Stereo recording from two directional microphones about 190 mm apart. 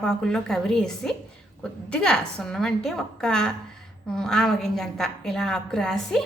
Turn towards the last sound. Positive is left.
turn(degrees=0)  # may be behind; listen again after turning